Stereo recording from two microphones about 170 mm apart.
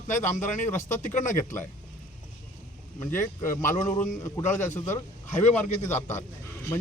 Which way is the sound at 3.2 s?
50° left (ahead or behind).